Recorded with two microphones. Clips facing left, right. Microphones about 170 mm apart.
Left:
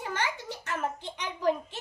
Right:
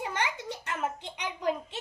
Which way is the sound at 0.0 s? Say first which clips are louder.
Even; 15° right (ahead or behind).